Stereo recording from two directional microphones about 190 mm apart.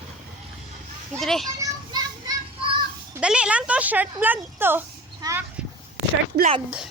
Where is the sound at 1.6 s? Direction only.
20° right (ahead or behind).